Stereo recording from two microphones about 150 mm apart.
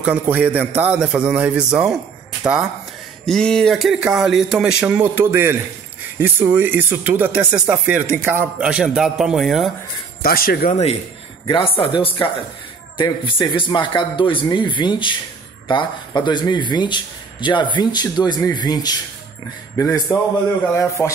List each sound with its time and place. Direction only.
0.0 s speech: 10° right (ahead or behind)
3.3 s speech: 5° left (ahead or behind)
10.2 s speech: 80° left
10.7 s a man's voice: 45° left (ahead or behind); by 21.1 s 20° left (ahead or behind)